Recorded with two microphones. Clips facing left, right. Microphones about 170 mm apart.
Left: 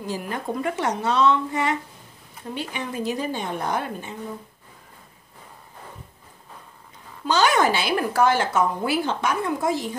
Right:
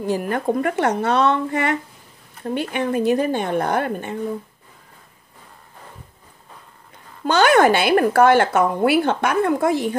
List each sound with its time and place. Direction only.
0.0 s speech: 55° right (ahead or behind)
7.2 s speech: 60° right (ahead or behind)